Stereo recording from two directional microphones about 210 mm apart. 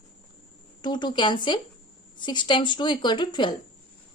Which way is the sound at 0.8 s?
20° left (ahead or behind).